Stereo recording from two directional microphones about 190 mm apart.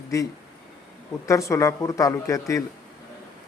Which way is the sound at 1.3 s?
15° left (ahead or behind).